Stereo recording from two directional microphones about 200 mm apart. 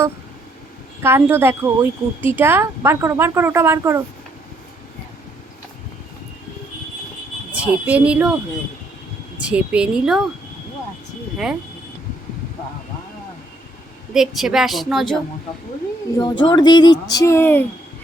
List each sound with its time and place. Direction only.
1.0 s a woman's voice: 10° right (ahead or behind)
7.5 s a woman's voice: 5° right (ahead or behind)
9.4 s a woman's voice: 5° right (ahead or behind)
14.1 s a woman's voice: centre (ahead or behind)
16.1 s speech: 20° left (ahead or behind)